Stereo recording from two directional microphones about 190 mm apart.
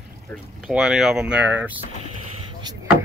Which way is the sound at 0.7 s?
Centre (ahead or behind).